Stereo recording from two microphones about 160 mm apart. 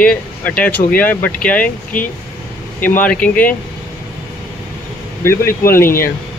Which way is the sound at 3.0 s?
10° left (ahead or behind).